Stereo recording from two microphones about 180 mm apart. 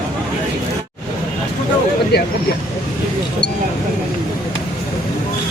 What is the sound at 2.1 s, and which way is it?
Speech, 65° left (ahead or behind).